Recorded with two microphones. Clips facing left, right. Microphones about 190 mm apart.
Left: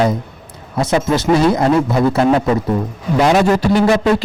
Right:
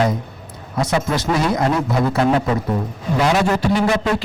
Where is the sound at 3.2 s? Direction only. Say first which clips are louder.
Left 4 dB; 40° left (ahead or behind).